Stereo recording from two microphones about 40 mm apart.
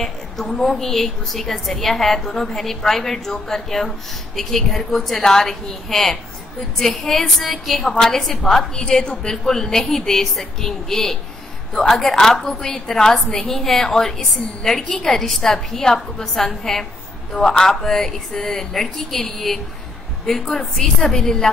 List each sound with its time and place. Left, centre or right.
0.0 s a woman's voice: centre